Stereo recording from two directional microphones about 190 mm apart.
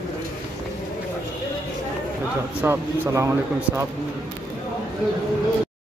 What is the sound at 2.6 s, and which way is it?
Speech, 15° right (ahead or behind).